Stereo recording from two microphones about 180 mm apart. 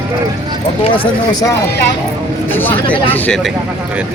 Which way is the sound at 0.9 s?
25° left (ahead or behind).